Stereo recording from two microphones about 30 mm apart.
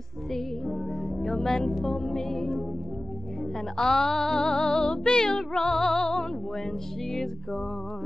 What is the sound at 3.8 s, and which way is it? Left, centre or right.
Music, centre.